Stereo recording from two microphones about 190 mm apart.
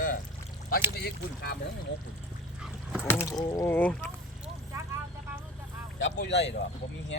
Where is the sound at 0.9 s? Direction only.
55° left (ahead or behind).